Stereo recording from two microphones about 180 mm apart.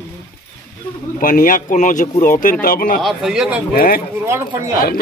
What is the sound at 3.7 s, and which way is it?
Speech, 55° left (ahead or behind).